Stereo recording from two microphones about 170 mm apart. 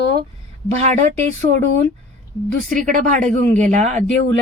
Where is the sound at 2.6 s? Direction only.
50° right (ahead or behind).